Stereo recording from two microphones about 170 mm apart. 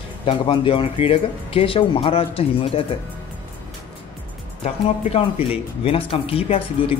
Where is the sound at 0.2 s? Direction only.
30° left (ahead or behind).